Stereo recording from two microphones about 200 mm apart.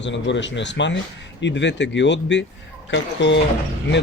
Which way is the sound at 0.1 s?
65° left (ahead or behind).